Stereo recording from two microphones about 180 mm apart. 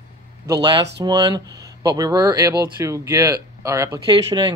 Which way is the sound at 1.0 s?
20° right (ahead or behind).